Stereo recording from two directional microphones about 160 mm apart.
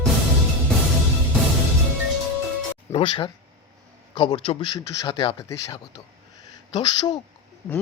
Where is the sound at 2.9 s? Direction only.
30° left (ahead or behind).